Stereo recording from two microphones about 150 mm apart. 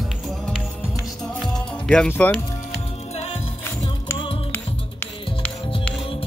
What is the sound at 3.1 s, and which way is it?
Music, 45° left (ahead or behind).